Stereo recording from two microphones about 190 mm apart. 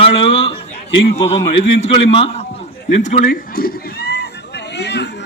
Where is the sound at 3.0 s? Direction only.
40° left (ahead or behind).